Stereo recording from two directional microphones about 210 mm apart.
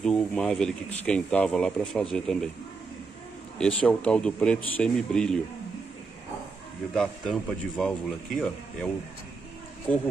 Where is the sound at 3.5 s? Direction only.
5° left (ahead or behind).